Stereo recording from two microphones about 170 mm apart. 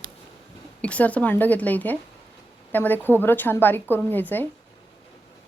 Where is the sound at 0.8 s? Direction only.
10° left (ahead or behind).